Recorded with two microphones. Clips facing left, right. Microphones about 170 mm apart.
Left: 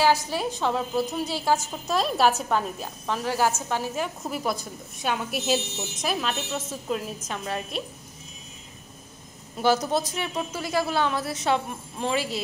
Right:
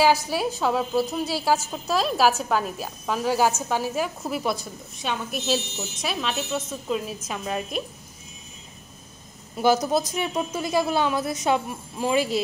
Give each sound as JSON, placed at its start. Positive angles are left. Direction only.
{"t": 0.0, "sound": "a woman's voice", "side_deg": -10}
{"t": 5.0, "sound": "a woman's voice", "side_deg": 10}
{"t": 7.2, "sound": "a woman's voice", "side_deg": -15}
{"t": 9.6, "sound": "a woman's voice", "side_deg": -10}